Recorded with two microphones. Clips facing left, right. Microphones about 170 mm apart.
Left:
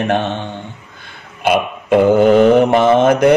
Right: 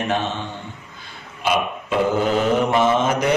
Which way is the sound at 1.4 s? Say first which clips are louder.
Left 6 dB; 55° left (ahead or behind).